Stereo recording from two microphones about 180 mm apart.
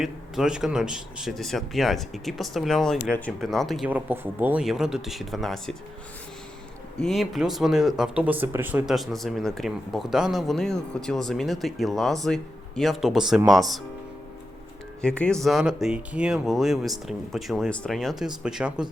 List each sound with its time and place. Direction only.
0.0 s speech: 5° right (ahead or behind)
7.0 s speech: centre (ahead or behind)
15.0 s speech: 5° left (ahead or behind)